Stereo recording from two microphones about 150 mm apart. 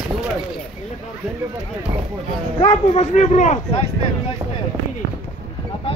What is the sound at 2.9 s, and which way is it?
Speech, 45° left (ahead or behind).